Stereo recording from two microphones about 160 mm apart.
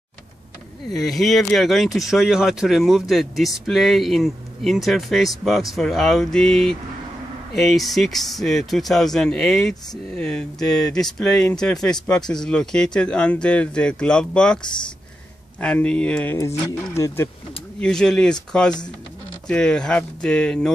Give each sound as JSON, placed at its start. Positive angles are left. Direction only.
{"t": 0.9, "sound": "speech", "side_deg": 0}
{"t": 16.3, "sound": "speech", "side_deg": 20}
{"t": 17.7, "sound": "speech", "side_deg": 5}